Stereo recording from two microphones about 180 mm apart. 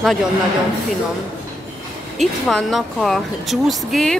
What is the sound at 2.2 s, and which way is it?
Speech, centre (ahead or behind).